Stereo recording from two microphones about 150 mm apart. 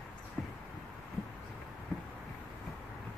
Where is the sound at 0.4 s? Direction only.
5° left (ahead or behind).